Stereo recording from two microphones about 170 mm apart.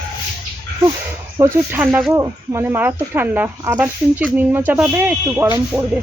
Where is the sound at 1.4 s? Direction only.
15° right (ahead or behind).